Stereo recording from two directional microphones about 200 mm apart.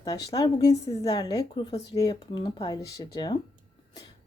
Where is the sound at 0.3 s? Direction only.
20° left (ahead or behind).